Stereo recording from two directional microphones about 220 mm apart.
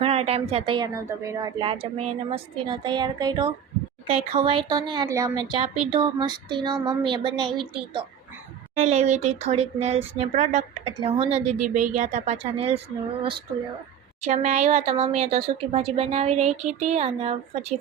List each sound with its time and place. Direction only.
0.0 s speech: 25° right (ahead or behind)
8.8 s speech: 30° right (ahead or behind)
14.2 s speech: 30° right (ahead or behind)